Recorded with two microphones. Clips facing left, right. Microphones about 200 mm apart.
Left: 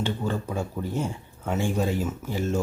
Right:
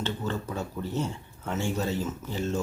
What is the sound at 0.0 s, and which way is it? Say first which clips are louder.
Speech: left 3 dB; 10° left (ahead or behind).